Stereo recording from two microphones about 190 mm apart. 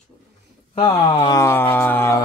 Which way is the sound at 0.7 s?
30° left (ahead or behind).